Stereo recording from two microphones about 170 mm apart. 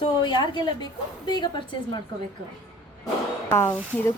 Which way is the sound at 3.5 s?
15° left (ahead or behind).